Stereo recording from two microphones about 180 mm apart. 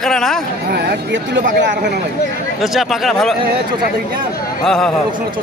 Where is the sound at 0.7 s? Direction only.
75° right (ahead or behind).